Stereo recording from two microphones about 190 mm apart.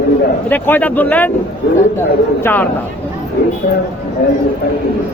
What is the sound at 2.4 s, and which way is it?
Speech, 10° left (ahead or behind).